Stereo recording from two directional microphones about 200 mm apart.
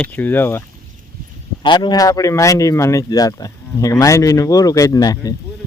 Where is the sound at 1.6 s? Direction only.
20° left (ahead or behind).